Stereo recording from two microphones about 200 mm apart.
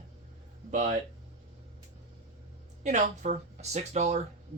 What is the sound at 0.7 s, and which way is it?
Speech, 35° right (ahead or behind).